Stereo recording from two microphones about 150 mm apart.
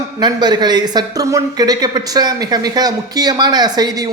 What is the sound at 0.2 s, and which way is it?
Speech, 30° right (ahead or behind).